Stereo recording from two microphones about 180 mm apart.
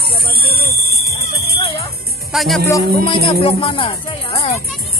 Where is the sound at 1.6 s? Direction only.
30° left (ahead or behind).